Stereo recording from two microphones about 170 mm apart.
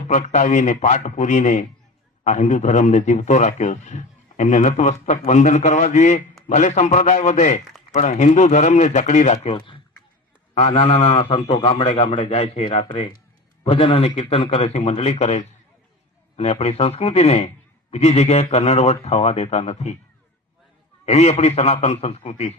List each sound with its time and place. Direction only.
0.1 s a man's voice: 45° left (ahead or behind)
21.0 s a man's voice: 40° left (ahead or behind)